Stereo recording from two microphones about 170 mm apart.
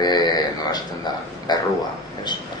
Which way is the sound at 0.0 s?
25° left (ahead or behind).